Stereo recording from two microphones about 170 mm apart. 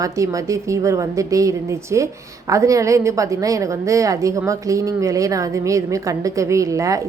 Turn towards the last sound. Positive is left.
turn(degrees=-20)  # may be behind; listen again after turning